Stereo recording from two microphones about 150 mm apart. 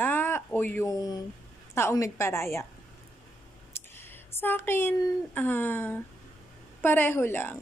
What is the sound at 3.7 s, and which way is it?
Speech, 15° left (ahead or behind).